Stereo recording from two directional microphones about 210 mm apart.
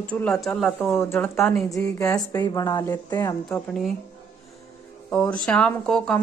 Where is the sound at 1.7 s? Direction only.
15° left (ahead or behind).